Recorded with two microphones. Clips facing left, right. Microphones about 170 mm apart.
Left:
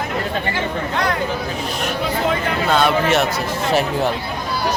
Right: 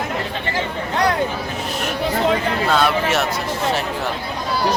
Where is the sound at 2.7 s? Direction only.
5° right (ahead or behind).